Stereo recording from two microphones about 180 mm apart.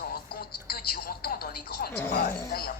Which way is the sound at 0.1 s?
60° left (ahead or behind).